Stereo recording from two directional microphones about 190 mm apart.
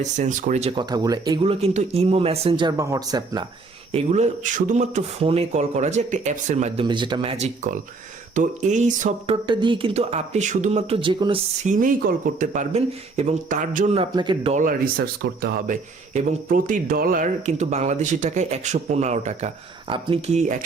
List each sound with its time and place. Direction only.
0.0 s speech: 40° right (ahead or behind)
0.8 s speech: 20° right (ahead or behind)
3.9 s speech: 35° right (ahead or behind)
6.8 s speech: 25° right (ahead or behind); by 9.3 s 40° right (ahead or behind)
9.3 s speech: 25° right (ahead or behind)
11.6 s speech: 45° right (ahead or behind); by 14.5 s 25° right (ahead or behind)
14.5 s speech: 45° right (ahead or behind)